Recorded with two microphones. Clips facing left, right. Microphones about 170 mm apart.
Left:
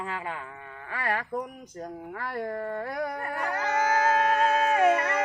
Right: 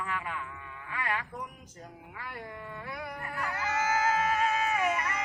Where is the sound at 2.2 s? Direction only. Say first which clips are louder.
Left 10 dB; 50° left (ahead or behind).